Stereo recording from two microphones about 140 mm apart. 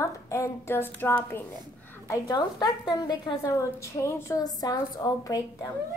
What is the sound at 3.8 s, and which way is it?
A woman's voice, 20° left (ahead or behind).